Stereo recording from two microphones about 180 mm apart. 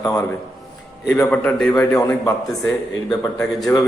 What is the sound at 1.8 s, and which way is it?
Speech, 15° left (ahead or behind).